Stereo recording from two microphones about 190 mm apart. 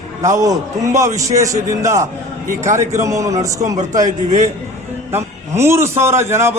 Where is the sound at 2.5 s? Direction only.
40° right (ahead or behind).